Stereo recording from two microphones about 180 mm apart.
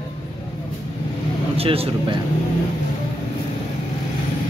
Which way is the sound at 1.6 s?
30° right (ahead or behind).